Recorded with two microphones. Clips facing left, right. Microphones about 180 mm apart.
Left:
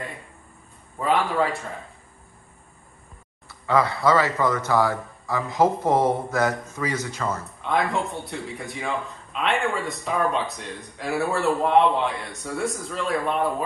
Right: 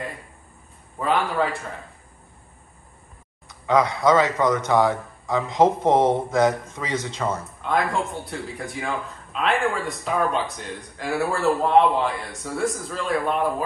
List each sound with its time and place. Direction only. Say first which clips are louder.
1.0 s speech: even; centre (ahead or behind)
3.4 s a man's voice: right 2 dB; 20° right (ahead or behind)
7.2 s speech: even; centre (ahead or behind)